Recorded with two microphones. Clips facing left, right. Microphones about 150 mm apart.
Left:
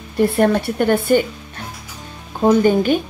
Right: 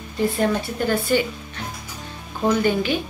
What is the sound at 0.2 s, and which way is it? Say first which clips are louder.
Speech: left 6 dB; 60° left (ahead or behind).